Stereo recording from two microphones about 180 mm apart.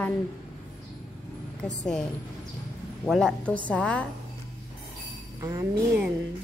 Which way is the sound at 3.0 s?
Centre (ahead or behind).